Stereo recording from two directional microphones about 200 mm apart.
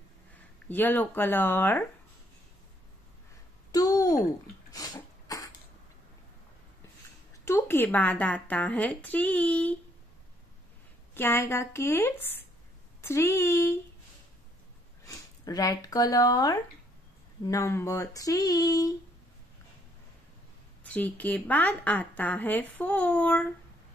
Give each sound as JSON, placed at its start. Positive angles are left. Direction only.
{"t": 0.7, "sound": "a woman's voice", "side_deg": 10}
{"t": 3.7, "sound": "a sound", "side_deg": 20}
{"t": 7.4, "sound": "a woman's voice", "side_deg": 10}
{"t": 11.1, "sound": "a woman's voice", "side_deg": 10}
{"t": 15.0, "sound": "a woman's voice", "side_deg": 20}
{"t": 20.8, "sound": "a woman's voice", "side_deg": 5}